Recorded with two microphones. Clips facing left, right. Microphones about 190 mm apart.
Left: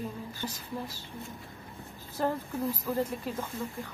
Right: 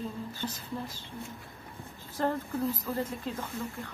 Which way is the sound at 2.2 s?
10° left (ahead or behind).